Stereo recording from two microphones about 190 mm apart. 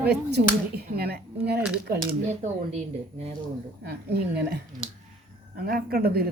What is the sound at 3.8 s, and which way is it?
Speech, 55° right (ahead or behind).